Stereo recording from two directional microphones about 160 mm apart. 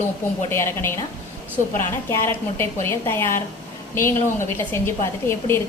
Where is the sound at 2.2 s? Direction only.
15° left (ahead or behind).